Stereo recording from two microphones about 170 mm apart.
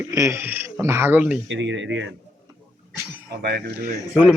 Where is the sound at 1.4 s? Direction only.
90° right.